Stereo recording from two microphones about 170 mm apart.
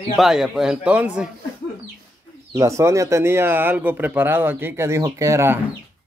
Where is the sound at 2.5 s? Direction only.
15° right (ahead or behind).